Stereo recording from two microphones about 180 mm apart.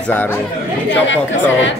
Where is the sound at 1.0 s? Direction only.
90° left.